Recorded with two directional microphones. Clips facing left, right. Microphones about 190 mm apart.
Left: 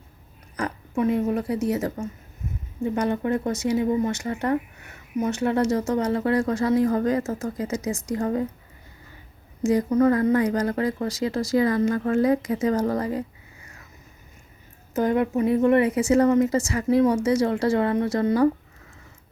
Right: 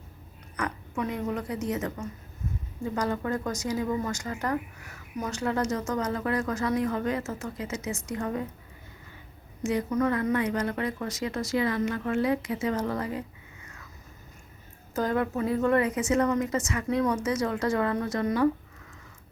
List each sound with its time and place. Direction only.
0.5 s speech: 30° left (ahead or behind)
9.6 s a woman's voice: 35° left (ahead or behind)
14.9 s speech: 20° left (ahead or behind)